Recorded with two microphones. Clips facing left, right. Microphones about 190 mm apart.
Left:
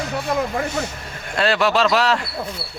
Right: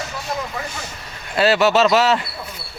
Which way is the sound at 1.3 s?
5° right (ahead or behind).